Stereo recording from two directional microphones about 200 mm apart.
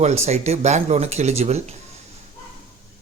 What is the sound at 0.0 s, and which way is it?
Speech, 35° right (ahead or behind).